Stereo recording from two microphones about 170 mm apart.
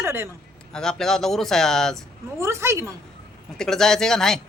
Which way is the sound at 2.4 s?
15° right (ahead or behind).